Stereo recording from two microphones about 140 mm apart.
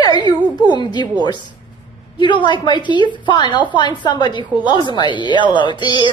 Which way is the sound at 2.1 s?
35° left (ahead or behind).